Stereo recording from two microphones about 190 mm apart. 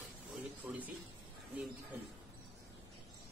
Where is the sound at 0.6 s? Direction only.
10° right (ahead or behind).